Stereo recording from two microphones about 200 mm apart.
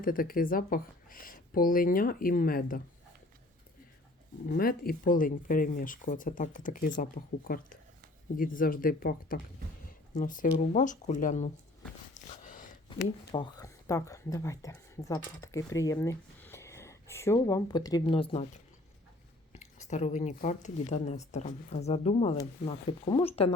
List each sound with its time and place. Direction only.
0.0 s speech: 45° left (ahead or behind)
4.4 s speech: 50° left (ahead or behind)
12.1 s a sound: 40° left (ahead or behind)
13.3 s speech: 20° left (ahead or behind)
19.5 s speech: 35° left (ahead or behind)